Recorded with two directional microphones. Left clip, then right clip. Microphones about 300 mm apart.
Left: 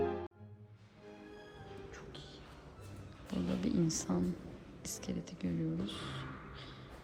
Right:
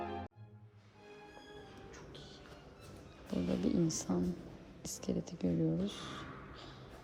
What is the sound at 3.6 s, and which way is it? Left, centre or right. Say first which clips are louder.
Speech: left 1 dB; centre.